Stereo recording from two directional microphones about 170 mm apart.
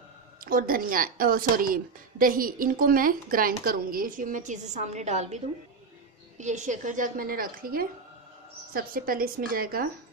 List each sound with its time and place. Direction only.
0.4 s a woman's voice: 55° right (ahead or behind)